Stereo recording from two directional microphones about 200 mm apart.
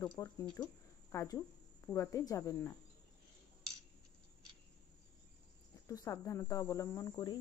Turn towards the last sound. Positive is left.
turn(degrees=20)  # may be behind; listen again after turning